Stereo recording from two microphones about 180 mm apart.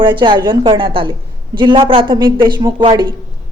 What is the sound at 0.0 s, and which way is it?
A woman's voice, 25° right (ahead or behind).